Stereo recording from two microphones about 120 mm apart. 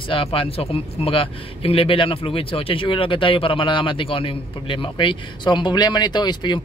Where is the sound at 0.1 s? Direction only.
50° left (ahead or behind).